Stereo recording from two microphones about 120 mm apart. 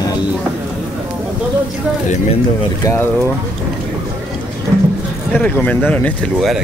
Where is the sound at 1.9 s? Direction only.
10° right (ahead or behind).